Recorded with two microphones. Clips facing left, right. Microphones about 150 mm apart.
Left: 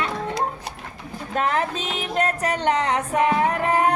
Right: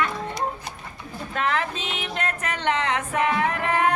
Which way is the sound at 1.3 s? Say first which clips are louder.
Left 3 dB; 40° left (ahead or behind).